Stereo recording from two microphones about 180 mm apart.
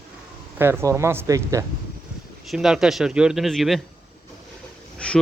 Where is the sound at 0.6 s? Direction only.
15° right (ahead or behind).